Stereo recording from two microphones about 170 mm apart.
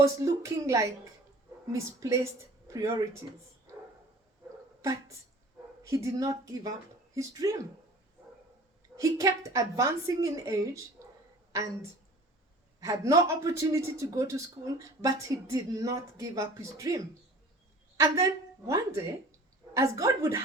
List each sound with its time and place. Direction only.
0.0 s a woman's voice: 15° right (ahead or behind)
4.8 s a man's voice: 20° right (ahead or behind)
9.0 s a man's voice: 20° right (ahead or behind)
17.9 s a woman's voice: 20° right (ahead or behind)